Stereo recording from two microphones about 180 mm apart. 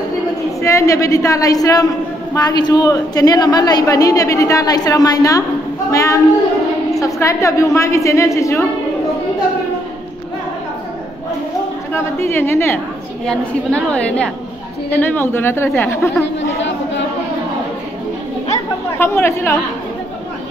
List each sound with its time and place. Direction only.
0.6 s a woman's voice: 15° left (ahead or behind)
11.9 s a woman's voice: 15° left (ahead or behind)
13.2 s a woman's voice: 5° left (ahead or behind)
16.3 s chatter: 90° left
18.9 s a woman's voice: 15° left (ahead or behind)